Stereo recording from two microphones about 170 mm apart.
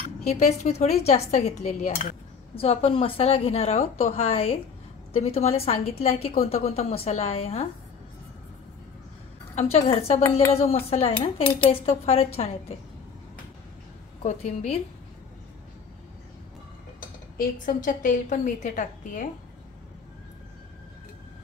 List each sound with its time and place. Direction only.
0.3 s a woman's voice: 40° left (ahead or behind)
9.6 s a woman's voice: 40° left (ahead or behind)
14.2 s a woman's voice: 40° left (ahead or behind)
17.4 s a woman's voice: 50° left (ahead or behind)